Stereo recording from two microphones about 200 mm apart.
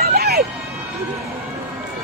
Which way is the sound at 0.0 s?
50° right (ahead or behind).